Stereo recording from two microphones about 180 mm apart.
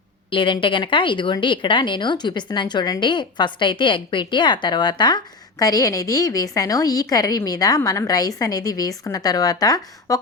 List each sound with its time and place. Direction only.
0.3 s speech: 30° left (ahead or behind)